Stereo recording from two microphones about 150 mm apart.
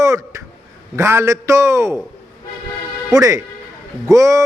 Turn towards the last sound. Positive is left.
turn(degrees=-20)  # may be behind; listen again after turning